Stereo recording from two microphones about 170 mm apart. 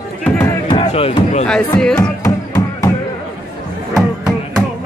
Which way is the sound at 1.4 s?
5° left (ahead or behind).